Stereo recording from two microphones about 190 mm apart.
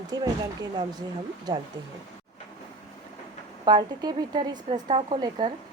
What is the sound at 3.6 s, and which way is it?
Speech, 20° right (ahead or behind).